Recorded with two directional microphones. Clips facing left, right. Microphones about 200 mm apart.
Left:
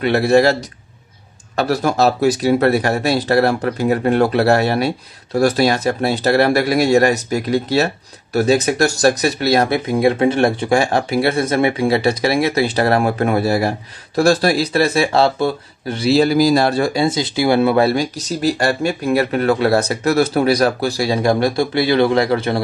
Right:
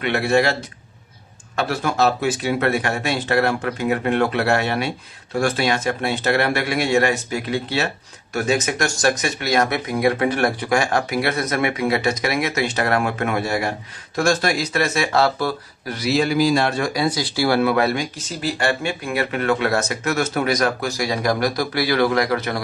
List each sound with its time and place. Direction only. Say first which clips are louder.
0.0 s speech: left 6 dB; 35° left (ahead or behind)